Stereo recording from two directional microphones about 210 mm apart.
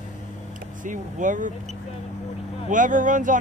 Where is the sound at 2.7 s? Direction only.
40° right (ahead or behind).